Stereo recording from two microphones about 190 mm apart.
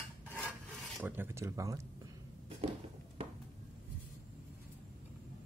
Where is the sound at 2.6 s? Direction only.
30° right (ahead or behind).